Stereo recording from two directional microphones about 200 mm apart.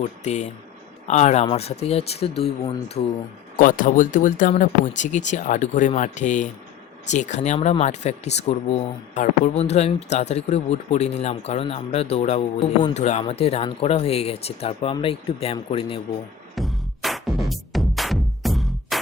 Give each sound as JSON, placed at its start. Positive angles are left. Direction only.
{"t": 0.0, "sound": "speech", "side_deg": 35}
{"t": 3.6, "sound": "speech", "side_deg": 40}
{"t": 16.6, "sound": "music", "side_deg": 0}